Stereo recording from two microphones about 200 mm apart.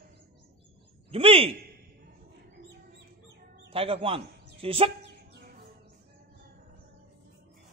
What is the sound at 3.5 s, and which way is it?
Bird, 30° right (ahead or behind).